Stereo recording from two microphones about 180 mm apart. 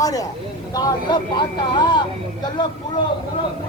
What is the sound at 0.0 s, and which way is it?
Speech, 20° left (ahead or behind).